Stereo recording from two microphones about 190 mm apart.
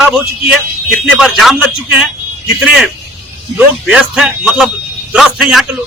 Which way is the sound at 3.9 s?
5° right (ahead or behind).